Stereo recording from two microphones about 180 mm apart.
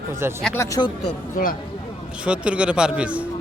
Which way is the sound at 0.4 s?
10° left (ahead or behind).